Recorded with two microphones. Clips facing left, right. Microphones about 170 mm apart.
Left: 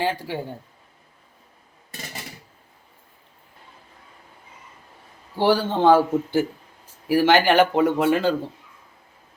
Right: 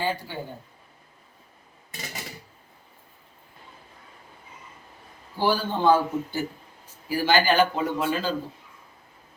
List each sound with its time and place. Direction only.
0.0 s a man's voice: 80° left
5.4 s speech: 75° left (ahead or behind)
5.8 s a man's voice: 85° left; by 8.4 s 65° left (ahead or behind)